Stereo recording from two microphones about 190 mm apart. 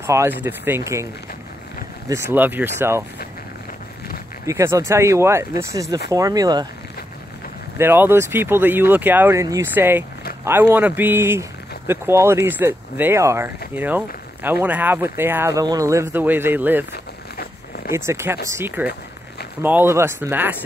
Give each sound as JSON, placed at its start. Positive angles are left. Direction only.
{"t": 0.0, "sound": "speech", "side_deg": -15}
{"t": 2.0, "sound": "speech", "side_deg": -15}
{"t": 4.5, "sound": "speech", "side_deg": -15}
{"t": 7.7, "sound": "speech", "side_deg": -10}
{"t": 16.9, "sound": "zipper", "side_deg": 55}
{"t": 17.9, "sound": "speech", "side_deg": -15}